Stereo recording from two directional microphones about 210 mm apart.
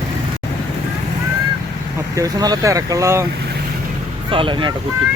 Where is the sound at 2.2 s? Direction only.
15° right (ahead or behind).